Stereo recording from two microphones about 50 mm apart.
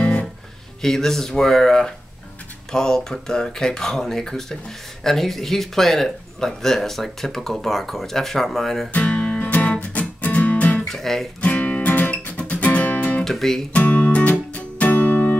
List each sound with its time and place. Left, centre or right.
0.0 s music: left
0.8 s speech: centre
8.9 s music: left
10.9 s speech: centre
11.4 s music: left
13.2 s speech: centre
13.7 s music: left